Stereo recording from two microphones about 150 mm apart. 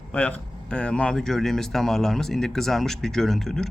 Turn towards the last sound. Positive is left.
turn(degrees=0)  # may be behind; listen again after turning